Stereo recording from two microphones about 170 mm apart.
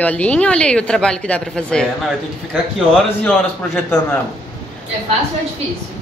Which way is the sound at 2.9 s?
5° left (ahead or behind).